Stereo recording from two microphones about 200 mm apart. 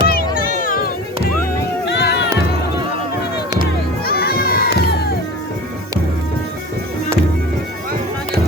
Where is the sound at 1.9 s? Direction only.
55° left (ahead or behind).